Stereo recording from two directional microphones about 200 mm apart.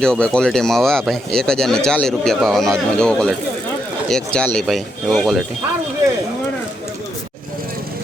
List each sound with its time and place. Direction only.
0.0 s speech: 5° left (ahead or behind)